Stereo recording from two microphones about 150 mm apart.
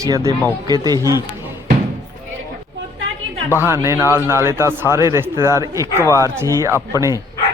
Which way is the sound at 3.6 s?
15° right (ahead or behind).